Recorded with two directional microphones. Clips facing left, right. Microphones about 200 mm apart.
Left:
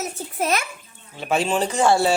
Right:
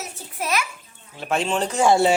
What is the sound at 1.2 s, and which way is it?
Speech, 5° left (ahead or behind).